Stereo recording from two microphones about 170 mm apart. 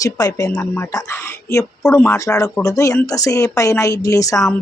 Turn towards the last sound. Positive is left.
turn(degrees=20)  # may be behind; listen again after turning